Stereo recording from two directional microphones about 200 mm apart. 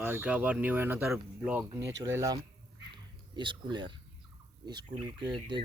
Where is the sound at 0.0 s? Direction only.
10° right (ahead or behind).